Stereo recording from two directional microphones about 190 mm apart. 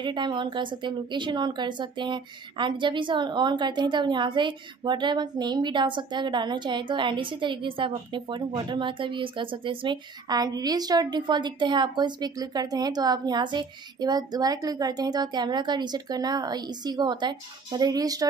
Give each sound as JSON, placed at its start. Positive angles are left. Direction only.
{"t": 0.0, "sound": "a woman's voice", "side_deg": -25}